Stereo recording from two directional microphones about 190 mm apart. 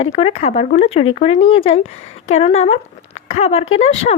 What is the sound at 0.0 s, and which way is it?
Speech, 30° left (ahead or behind).